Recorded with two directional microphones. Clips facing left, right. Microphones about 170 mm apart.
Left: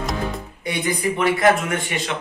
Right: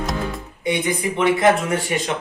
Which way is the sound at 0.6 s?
20° right (ahead or behind).